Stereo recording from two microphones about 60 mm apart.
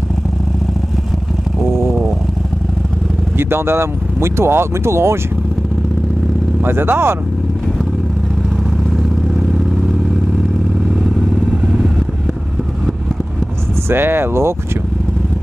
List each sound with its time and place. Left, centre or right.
3.3 s speech: right
6.6 s speech: right
11.5 s vehicle: centre
13.8 s speech: right